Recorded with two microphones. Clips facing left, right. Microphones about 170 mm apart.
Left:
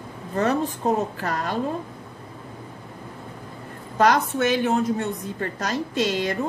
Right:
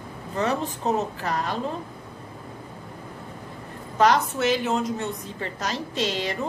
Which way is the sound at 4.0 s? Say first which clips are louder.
Left 1 dB; 55° left (ahead or behind).